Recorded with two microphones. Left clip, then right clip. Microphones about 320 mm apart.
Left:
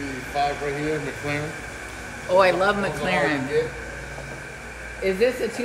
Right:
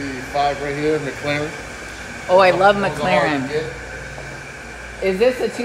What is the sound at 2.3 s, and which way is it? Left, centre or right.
Speech, centre.